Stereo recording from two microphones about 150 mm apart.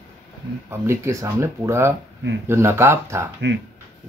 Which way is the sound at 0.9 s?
20° right (ahead or behind).